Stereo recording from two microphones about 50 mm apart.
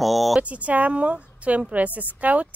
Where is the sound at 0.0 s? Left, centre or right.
Centre.